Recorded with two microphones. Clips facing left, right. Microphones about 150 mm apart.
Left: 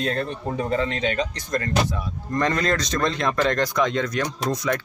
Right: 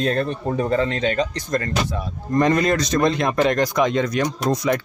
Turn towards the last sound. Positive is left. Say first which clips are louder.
# right 4 dB
turn(degrees=-15)  # may be behind; listen again after turning